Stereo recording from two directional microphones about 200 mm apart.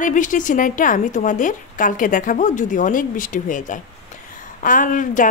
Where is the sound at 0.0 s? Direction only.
40° left (ahead or behind).